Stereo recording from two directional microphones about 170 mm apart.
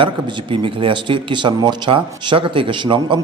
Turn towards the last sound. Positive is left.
turn(degrees=-30)  # may be behind; listen again after turning